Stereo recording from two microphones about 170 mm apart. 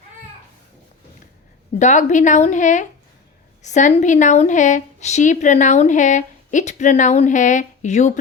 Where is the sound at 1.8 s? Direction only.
45° left (ahead or behind).